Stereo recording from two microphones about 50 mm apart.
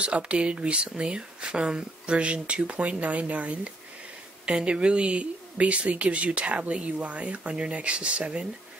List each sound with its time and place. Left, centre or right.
0.0 s speech: right